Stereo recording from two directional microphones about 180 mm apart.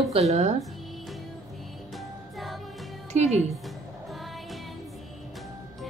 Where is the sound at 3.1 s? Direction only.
35° right (ahead or behind).